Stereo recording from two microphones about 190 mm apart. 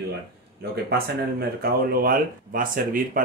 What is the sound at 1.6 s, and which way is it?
Speech, 50° right (ahead or behind).